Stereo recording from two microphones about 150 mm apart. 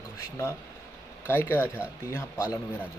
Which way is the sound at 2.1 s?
15° left (ahead or behind).